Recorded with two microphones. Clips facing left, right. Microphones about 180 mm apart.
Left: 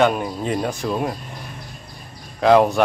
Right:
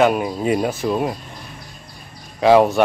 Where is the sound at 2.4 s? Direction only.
Centre (ahead or behind).